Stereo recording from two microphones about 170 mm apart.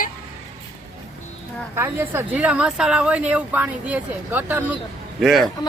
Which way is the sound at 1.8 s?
15° right (ahead or behind).